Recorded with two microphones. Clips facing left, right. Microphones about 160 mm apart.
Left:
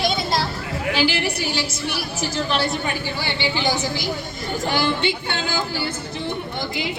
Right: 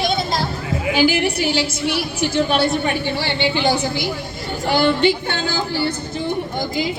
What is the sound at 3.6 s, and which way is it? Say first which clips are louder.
Speech: right 4 dB; 55° right (ahead or behind).